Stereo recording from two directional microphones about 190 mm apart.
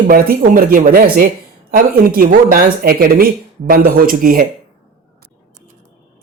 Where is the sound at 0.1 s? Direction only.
50° right (ahead or behind).